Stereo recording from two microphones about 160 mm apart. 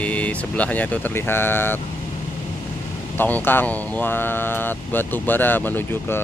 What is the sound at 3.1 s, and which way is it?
Speech, 10° left (ahead or behind).